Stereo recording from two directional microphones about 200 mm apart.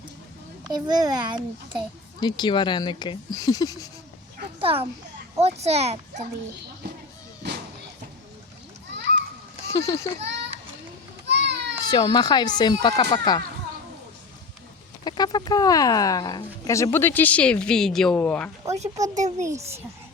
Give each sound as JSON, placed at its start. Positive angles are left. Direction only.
{"t": 0.7, "sound": "a child's voice", "side_deg": -20}
{"t": 2.2, "sound": "speech", "side_deg": 20}
{"t": 4.6, "sound": "a child's voice", "side_deg": -30}
{"t": 9.6, "sound": "a child's voice", "side_deg": 15}
{"t": 10.2, "sound": "a child's voice", "side_deg": -60}
{"t": 11.3, "sound": "children playing", "side_deg": -60}
{"t": 11.9, "sound": "speech", "side_deg": 20}
{"t": 15.0, "sound": "speech", "side_deg": 20}
{"t": 19.1, "sound": "a child's voice", "side_deg": -40}
{"t": 19.5, "sound": "a child's voice", "side_deg": -15}